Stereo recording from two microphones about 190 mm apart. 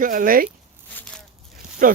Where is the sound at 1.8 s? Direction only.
45° right (ahead or behind).